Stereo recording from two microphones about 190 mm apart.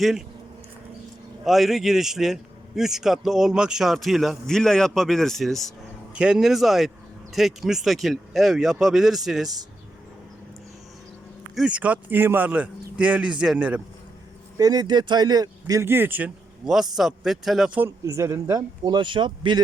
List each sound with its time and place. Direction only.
0.0 s a man's voice: centre (ahead or behind)
1.5 s a man's voice: centre (ahead or behind)
11.5 s speech: 5° right (ahead or behind)
14.6 s speech: 20° right (ahead or behind)